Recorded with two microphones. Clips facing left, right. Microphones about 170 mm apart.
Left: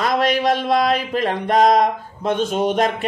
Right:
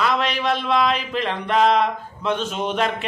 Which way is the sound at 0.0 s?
45° left (ahead or behind).